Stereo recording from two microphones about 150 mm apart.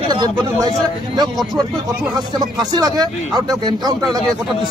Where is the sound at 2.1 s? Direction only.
25° right (ahead or behind).